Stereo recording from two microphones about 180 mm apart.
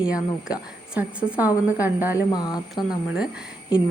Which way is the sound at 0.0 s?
5° right (ahead or behind).